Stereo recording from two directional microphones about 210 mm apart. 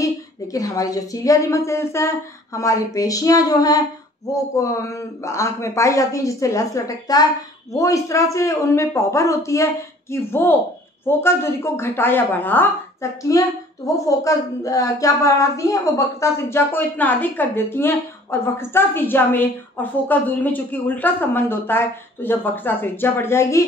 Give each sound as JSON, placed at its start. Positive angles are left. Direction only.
{"t": 0.0, "sound": "a woman's voice", "side_deg": 15}